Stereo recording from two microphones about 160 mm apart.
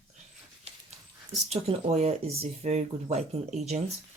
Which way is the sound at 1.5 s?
40° right (ahead or behind).